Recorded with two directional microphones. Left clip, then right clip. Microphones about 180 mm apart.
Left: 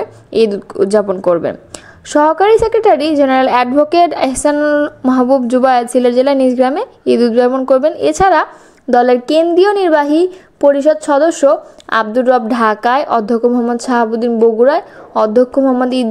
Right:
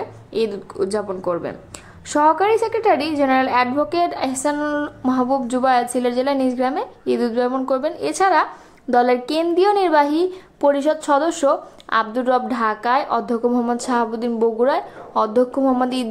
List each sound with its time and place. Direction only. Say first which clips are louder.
0.0 s a woman's voice: left 10 dB; 35° left (ahead or behind)